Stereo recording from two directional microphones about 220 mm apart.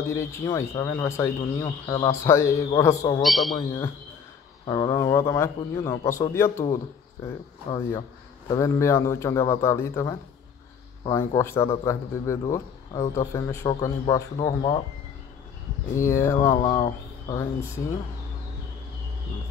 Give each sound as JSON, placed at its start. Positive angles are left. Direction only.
{"t": 0.1, "sound": "speech", "side_deg": 10}
{"t": 3.2, "sound": "a man's voice", "side_deg": 0}
{"t": 4.6, "sound": "speech", "side_deg": 15}
{"t": 8.5, "sound": "speech", "side_deg": 15}
{"t": 15.9, "sound": "speech", "side_deg": 15}